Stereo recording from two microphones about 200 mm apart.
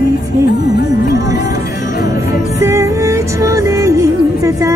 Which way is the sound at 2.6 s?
15° right (ahead or behind).